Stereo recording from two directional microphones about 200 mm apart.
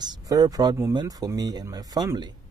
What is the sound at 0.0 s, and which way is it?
Speech, 20° right (ahead or behind).